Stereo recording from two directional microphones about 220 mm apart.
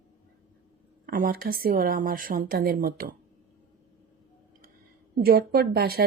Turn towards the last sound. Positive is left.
turn(degrees=-45)  # may be behind; listen again after turning